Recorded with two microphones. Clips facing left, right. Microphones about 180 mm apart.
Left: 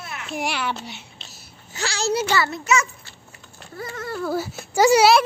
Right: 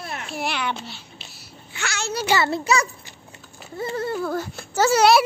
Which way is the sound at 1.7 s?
35° left (ahead or behind).